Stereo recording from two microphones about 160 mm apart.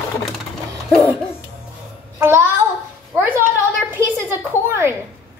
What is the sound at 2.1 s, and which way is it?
Child singing, 15° right (ahead or behind).